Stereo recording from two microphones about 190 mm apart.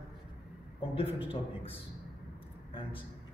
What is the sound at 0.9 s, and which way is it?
Speech, 30° left (ahead or behind).